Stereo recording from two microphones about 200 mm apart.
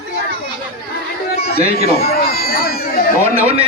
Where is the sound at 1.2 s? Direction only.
50° left (ahead or behind).